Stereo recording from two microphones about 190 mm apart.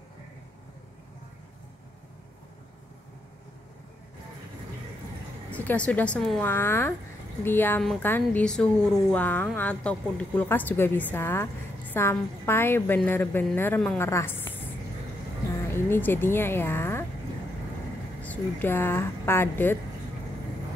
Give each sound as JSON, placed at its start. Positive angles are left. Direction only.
{"t": 5.5, "sound": "a woman's voice", "side_deg": 10}
{"t": 15.7, "sound": "speech", "side_deg": 10}
{"t": 18.2, "sound": "a woman's voice", "side_deg": 10}